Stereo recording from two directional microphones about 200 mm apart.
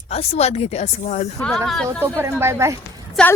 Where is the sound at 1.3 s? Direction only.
Centre (ahead or behind).